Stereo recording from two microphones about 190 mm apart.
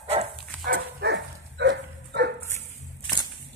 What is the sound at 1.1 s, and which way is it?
Dog, 70° right (ahead or behind).